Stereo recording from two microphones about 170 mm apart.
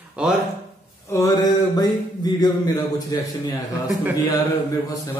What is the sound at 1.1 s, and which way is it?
A man's voice, 20° left (ahead or behind).